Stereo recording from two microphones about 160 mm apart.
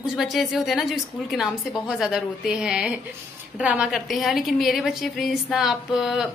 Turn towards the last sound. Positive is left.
turn(degrees=-5)  # may be behind; listen again after turning